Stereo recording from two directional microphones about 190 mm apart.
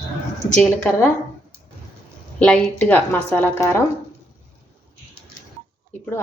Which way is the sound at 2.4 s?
5° left (ahead or behind).